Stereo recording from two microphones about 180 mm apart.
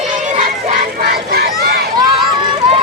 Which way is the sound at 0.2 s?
45° right (ahead or behind).